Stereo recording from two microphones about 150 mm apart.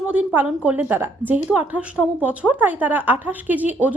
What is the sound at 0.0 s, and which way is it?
A woman's voice, 10° right (ahead or behind).